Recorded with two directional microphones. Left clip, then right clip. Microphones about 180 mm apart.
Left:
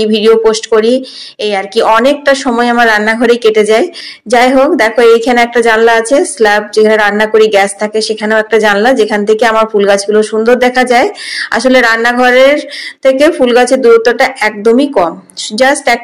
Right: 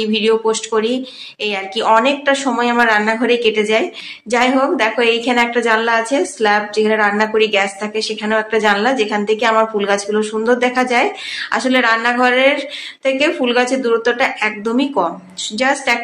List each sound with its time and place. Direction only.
0.0 s a woman's voice: 35° left (ahead or behind)